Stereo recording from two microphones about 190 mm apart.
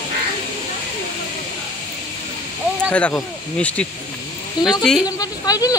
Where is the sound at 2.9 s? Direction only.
5° left (ahead or behind).